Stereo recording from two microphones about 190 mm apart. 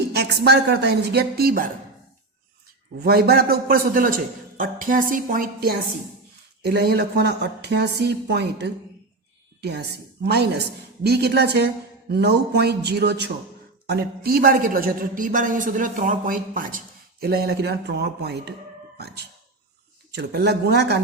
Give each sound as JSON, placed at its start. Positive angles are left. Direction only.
{"t": 0.1, "sound": "a woman's voice", "side_deg": -60}
{"t": 3.0, "sound": "a woman's voice", "side_deg": -55}